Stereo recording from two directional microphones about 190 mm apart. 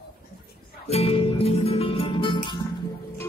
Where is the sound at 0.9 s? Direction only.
30° left (ahead or behind).